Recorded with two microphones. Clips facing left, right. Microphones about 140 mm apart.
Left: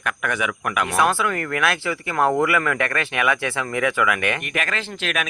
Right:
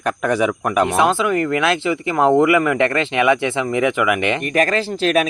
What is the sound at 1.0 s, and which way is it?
Speech, 20° right (ahead or behind).